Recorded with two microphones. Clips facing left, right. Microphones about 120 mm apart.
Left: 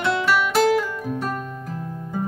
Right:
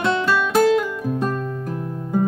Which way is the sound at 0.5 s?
20° right (ahead or behind).